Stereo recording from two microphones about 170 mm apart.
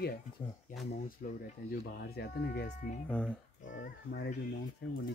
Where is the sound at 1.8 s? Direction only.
75° left (ahead or behind).